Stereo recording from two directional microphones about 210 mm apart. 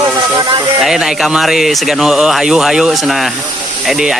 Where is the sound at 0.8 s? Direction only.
Centre (ahead or behind).